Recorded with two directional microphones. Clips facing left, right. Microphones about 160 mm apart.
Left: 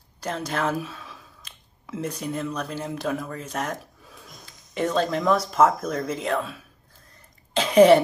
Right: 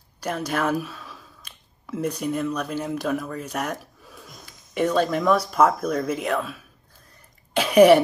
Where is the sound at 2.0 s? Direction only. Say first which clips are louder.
Right 4 dB; 30° left (ahead or behind).